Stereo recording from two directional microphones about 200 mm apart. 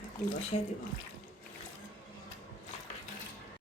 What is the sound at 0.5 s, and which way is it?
Speech, 35° left (ahead or behind).